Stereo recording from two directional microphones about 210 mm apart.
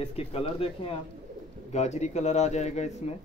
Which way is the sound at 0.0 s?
30° left (ahead or behind).